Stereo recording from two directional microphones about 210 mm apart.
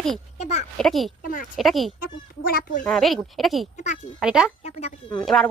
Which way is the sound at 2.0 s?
45° left (ahead or behind).